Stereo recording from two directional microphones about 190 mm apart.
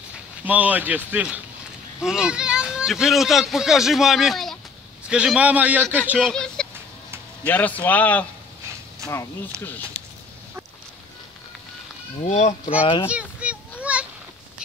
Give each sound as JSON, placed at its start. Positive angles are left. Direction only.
{"t": 0.5, "sound": "a man's voice", "side_deg": -10}
{"t": 9.0, "sound": "speech", "side_deg": -15}
{"t": 12.3, "sound": "speech", "side_deg": 35}
{"t": 13.1, "sound": "a sound", "side_deg": -5}